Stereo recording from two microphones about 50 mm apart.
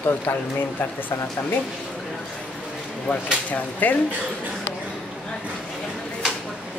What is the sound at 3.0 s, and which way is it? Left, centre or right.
Speech, left.